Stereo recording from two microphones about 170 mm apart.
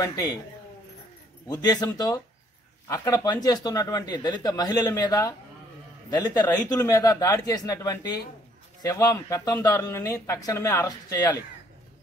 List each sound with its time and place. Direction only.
0.0 s speech: 20° left (ahead or behind)
1.5 s speech: 20° left (ahead or behind)